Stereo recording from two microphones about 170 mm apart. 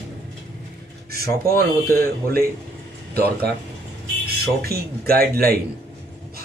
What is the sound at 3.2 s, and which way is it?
Speech, 65° right (ahead or behind).